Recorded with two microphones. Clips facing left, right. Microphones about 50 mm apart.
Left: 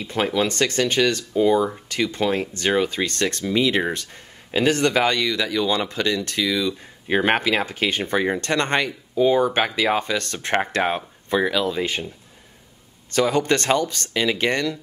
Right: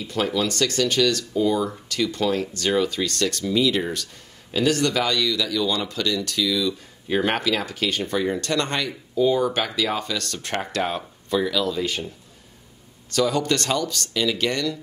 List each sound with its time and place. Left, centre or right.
0.0 s speech: left
13.1 s speech: left